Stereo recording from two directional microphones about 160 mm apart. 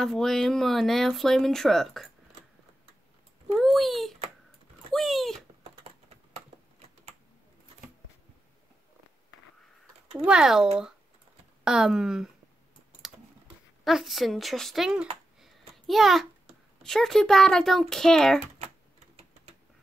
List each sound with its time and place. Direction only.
0.0 s speech: centre (ahead or behind)
3.5 s a child's voice: centre (ahead or behind)
4.9 s a sound: centre (ahead or behind)
5.9 s typing: 40° right (ahead or behind)
10.1 s speech: 5° right (ahead or behind)
13.8 s speech: centre (ahead or behind)